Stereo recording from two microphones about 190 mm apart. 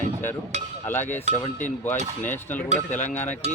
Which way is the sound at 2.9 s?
40° left (ahead or behind).